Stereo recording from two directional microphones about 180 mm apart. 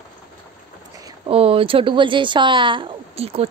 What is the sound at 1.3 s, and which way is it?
A woman's voice, 30° right (ahead or behind).